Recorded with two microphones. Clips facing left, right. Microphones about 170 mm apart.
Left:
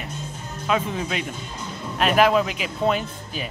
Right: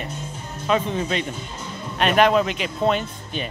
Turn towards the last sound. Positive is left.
turn(degrees=5)  # may be behind; listen again after turning